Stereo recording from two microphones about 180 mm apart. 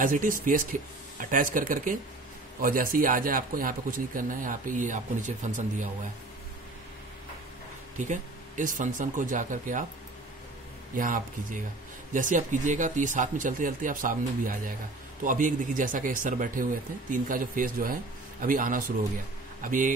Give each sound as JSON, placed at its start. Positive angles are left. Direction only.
{"t": 0.0, "sound": "speech", "side_deg": -50}
{"t": 8.0, "sound": "speech", "side_deg": -45}
{"t": 11.0, "sound": "speech", "side_deg": -50}